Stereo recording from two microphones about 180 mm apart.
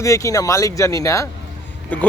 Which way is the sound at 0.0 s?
15° left (ahead or behind).